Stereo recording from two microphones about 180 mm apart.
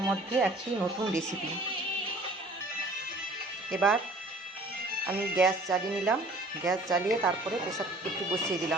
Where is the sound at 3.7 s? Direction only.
5° left (ahead or behind).